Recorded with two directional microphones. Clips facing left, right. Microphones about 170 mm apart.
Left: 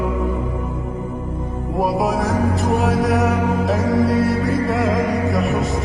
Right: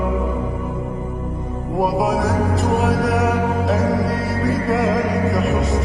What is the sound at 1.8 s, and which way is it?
Music, centre (ahead or behind).